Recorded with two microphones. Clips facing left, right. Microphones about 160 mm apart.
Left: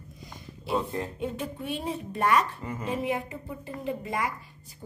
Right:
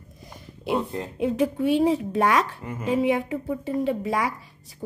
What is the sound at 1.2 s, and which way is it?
A woman's voice, 90° right.